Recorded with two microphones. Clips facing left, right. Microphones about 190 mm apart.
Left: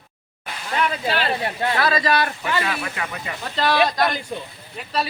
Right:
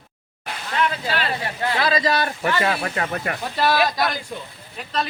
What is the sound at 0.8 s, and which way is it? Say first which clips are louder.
Speech: left 1 dB; 20° left (ahead or behind).